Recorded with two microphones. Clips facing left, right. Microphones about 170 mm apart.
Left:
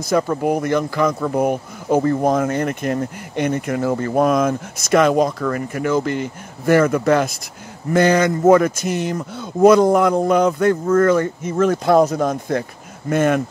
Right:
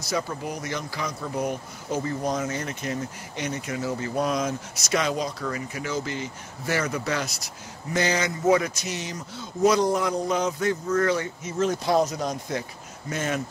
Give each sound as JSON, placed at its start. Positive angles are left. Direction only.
{"t": 0.0, "sound": "speech", "side_deg": 55}